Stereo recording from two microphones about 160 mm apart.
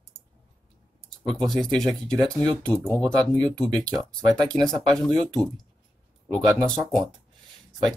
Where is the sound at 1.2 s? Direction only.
Centre (ahead or behind).